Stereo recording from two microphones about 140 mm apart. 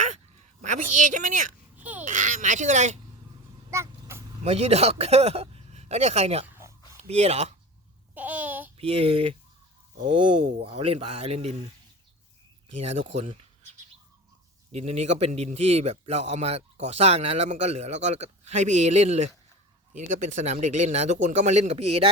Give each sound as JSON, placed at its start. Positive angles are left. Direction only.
{"t": 0.6, "sound": "speech", "side_deg": -65}
{"t": 1.7, "sound": "a sound", "side_deg": -10}
{"t": 2.0, "sound": "speech", "side_deg": -65}
{"t": 3.7, "sound": "a sound", "side_deg": -20}
{"t": 4.4, "sound": "a man's voice", "side_deg": -50}
{"t": 8.1, "sound": "babbling", "side_deg": -10}
{"t": 8.8, "sound": "a man's voice", "side_deg": -40}
{"t": 12.8, "sound": "a man's voice", "side_deg": -50}
{"t": 14.7, "sound": "a man's voice", "side_deg": -50}